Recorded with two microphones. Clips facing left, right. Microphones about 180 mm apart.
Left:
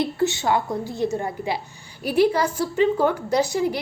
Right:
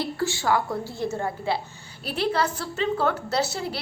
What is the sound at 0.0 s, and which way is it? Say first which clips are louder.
A woman's voice: left 4 dB; 20° left (ahead or behind).